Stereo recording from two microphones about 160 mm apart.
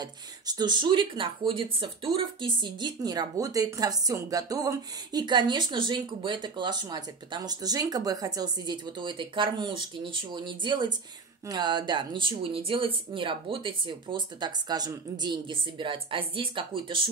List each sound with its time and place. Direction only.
0.0 s speech: 25° right (ahead or behind)